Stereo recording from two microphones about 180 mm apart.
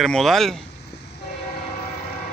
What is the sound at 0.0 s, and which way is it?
Speech, centre (ahead or behind).